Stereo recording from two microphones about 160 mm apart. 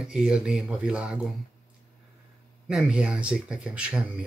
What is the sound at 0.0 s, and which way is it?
Speech, 5° right (ahead or behind).